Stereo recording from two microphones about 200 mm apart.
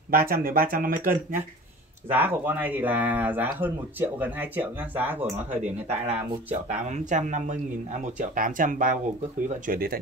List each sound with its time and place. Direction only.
0.1 s speech: 50° right (ahead or behind)
2.1 s speech: 10° right (ahead or behind)
5.6 s speech: 35° right (ahead or behind)